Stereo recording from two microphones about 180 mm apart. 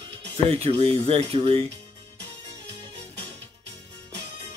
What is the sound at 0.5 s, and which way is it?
Speech, 30° right (ahead or behind).